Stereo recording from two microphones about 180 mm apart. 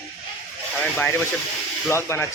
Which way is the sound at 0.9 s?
10° left (ahead or behind).